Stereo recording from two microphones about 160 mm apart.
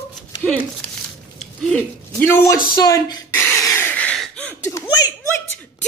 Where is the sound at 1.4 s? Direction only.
Centre (ahead or behind).